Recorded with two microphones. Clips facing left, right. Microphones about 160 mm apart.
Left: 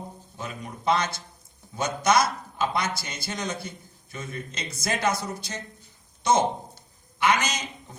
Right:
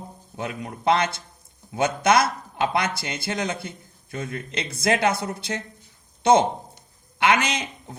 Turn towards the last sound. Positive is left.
turn(degrees=-60)  # may be behind; listen again after turning